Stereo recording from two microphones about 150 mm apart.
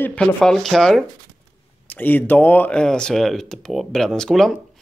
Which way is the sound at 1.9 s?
10° left (ahead or behind).